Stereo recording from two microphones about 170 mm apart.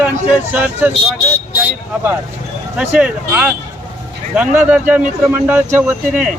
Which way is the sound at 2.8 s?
5° right (ahead or behind).